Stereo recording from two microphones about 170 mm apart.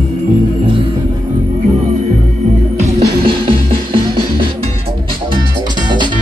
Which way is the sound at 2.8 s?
30° right (ahead or behind).